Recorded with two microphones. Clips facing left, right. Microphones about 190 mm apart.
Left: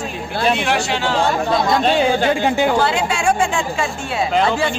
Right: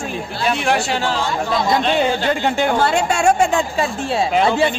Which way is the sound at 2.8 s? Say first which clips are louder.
Right 2 dB; 45° right (ahead or behind).